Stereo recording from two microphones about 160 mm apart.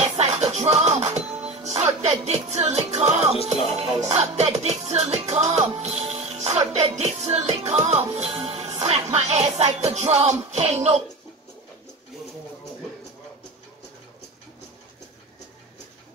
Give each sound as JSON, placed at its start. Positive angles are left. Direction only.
{"t": 0.2, "sound": "music", "side_deg": -45}